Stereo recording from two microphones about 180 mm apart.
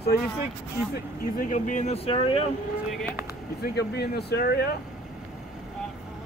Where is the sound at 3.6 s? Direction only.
65° left (ahead or behind).